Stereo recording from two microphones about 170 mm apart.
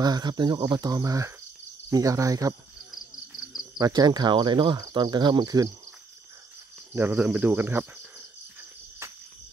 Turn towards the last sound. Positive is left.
turn(degrees=-15)  # may be behind; listen again after turning